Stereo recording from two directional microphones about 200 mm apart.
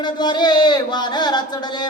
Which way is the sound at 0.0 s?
20° left (ahead or behind).